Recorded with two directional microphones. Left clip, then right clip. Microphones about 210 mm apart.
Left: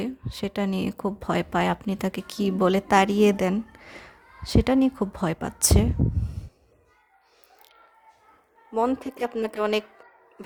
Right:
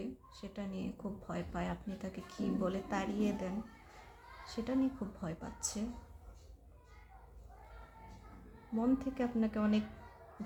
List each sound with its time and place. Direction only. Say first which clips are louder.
0.0 s speech: left 15 dB; 55° left (ahead or behind)
8.8 s speech: left 10 dB; 55° left (ahead or behind)